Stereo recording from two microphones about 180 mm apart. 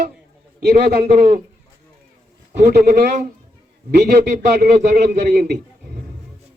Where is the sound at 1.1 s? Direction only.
40° right (ahead or behind).